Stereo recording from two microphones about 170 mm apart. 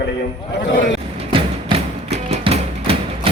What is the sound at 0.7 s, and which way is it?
Speech, 90° left.